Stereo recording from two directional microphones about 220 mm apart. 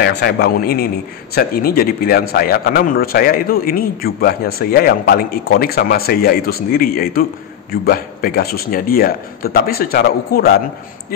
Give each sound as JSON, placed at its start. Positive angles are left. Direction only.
{"t": 0.0, "sound": "a man's voice", "side_deg": 50}